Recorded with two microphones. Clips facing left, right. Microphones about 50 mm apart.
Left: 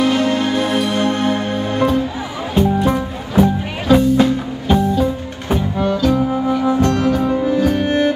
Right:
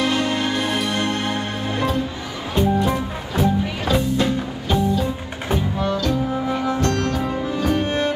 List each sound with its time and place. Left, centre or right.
0.0 s music: centre
7.8 s music: centre